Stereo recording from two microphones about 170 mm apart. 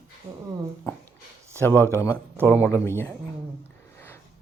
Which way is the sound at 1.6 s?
10° left (ahead or behind).